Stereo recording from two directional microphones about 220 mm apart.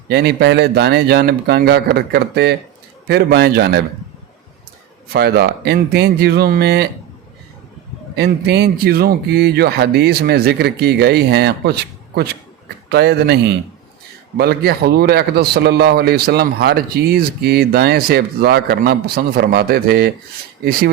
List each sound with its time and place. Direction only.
0.1 s a man's voice: 45° right (ahead or behind)
5.1 s a man's voice: 45° right (ahead or behind)
8.1 s a man's voice: 50° right (ahead or behind)